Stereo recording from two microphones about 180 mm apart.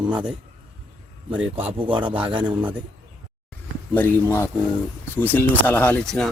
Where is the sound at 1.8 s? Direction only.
30° right (ahead or behind).